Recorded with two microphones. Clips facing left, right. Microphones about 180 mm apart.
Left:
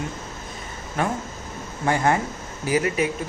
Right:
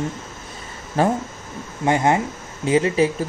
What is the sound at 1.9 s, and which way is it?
Speech, 20° right (ahead or behind).